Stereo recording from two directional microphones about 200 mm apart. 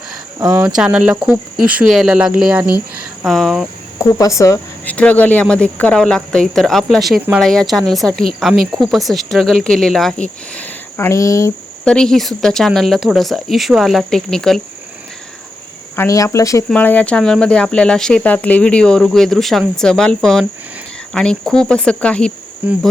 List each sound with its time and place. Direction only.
0.8 s speech: 5° right (ahead or behind)
3.9 s speech: 15° left (ahead or behind)
11.9 s speech: 5° left (ahead or behind)
16.0 s speech: 15° left (ahead or behind)